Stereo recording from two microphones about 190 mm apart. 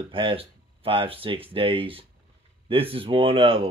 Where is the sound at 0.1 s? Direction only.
25° right (ahead or behind).